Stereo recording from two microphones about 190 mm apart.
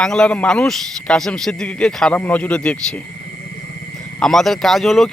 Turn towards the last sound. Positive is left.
turn(degrees=0)  # may be behind; listen again after turning